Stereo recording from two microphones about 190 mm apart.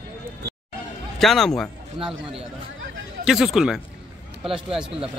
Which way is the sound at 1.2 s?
Centre (ahead or behind).